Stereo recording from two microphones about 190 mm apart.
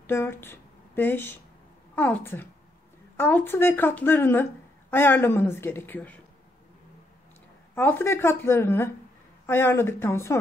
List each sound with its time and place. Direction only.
0.0 s speech: 10° left (ahead or behind)
7.7 s speech: 10° left (ahead or behind)